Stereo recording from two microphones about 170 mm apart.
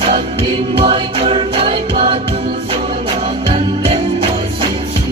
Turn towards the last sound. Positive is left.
turn(degrees=-35)  # may be behind; listen again after turning